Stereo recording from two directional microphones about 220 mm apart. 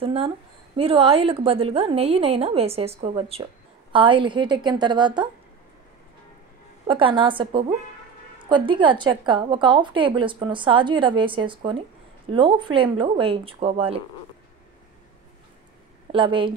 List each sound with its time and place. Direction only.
0.0 s a woman's voice: 25° right (ahead or behind)
6.9 s a woman's voice: 25° right (ahead or behind)
16.1 s a woman's voice: 25° right (ahead or behind)